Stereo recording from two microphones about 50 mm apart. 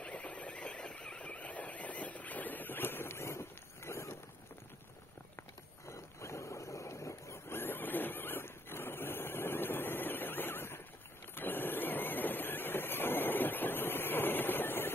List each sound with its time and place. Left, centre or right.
0.0 s horse: left
5.9 s boat: left
7.4 s vehicle: left
11.3 s printer: left